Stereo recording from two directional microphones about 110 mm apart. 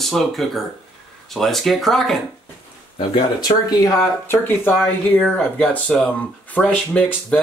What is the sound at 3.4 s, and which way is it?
Speech, 35° left (ahead or behind).